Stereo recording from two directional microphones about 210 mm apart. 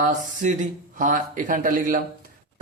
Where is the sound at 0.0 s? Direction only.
35° right (ahead or behind).